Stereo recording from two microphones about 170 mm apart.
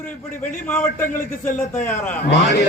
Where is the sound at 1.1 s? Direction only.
50° left (ahead or behind).